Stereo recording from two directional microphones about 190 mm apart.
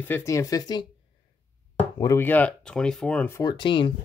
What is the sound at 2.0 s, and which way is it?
Speech, 15° left (ahead or behind).